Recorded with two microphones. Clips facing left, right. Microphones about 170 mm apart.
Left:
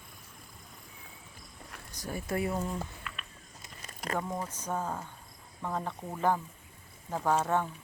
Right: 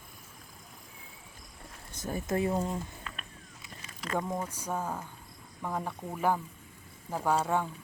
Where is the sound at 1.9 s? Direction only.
20° right (ahead or behind).